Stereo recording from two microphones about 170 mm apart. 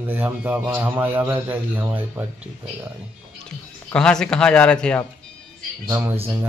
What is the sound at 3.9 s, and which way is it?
Speech, 5° left (ahead or behind).